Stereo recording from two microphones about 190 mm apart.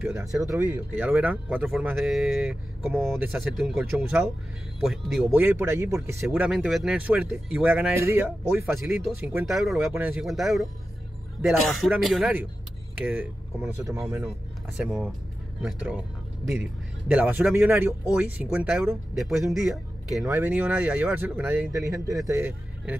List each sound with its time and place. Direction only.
0.1 s speech: 15° right (ahead or behind); by 9.8 s centre (ahead or behind)
9.8 s speech: 10° right (ahead or behind)
17.1 s speech: 5° right (ahead or behind)